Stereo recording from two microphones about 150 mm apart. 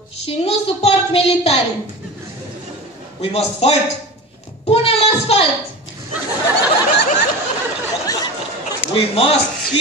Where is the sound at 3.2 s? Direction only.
40° left (ahead or behind).